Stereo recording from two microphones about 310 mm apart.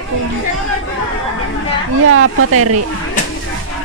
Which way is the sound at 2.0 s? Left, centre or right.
Right.